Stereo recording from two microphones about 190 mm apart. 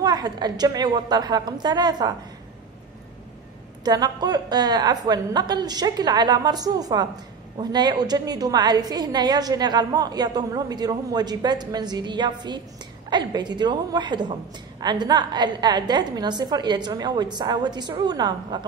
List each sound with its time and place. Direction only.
0.0 s a woman's voice: 20° right (ahead or behind)
3.8 s a woman's voice: 20° right (ahead or behind)